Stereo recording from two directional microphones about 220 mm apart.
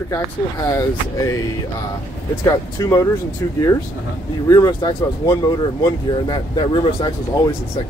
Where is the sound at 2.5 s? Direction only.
15° left (ahead or behind).